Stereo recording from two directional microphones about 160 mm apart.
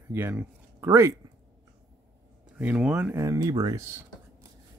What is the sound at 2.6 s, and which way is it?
Speech, 5° right (ahead or behind).